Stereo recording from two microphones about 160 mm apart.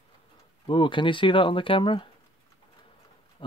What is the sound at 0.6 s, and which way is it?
Speech, 30° left (ahead or behind).